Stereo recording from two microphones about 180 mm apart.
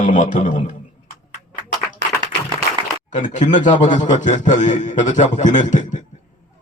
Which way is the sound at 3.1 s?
45° left (ahead or behind).